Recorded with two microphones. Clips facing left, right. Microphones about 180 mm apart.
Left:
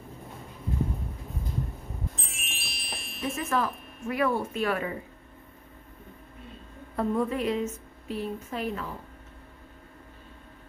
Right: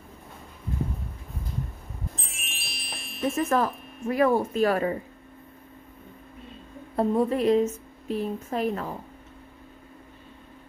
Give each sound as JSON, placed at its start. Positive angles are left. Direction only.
{"t": 2.1, "sound": "music", "side_deg": 0}
{"t": 3.3, "sound": "a woman's voice", "side_deg": -40}
{"t": 7.0, "sound": "a woman's voice", "side_deg": -35}